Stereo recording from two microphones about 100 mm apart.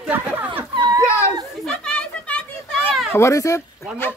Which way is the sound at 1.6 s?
10° left (ahead or behind).